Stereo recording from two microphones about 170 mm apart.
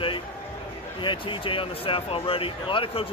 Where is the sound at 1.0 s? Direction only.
30° left (ahead or behind).